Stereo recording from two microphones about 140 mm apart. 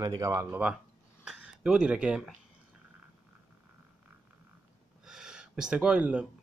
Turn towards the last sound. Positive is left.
turn(degrees=-10)  # may be behind; listen again after turning